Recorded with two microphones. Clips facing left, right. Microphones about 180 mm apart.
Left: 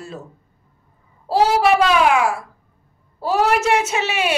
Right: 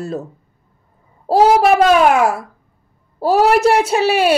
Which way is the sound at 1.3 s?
45° right (ahead or behind).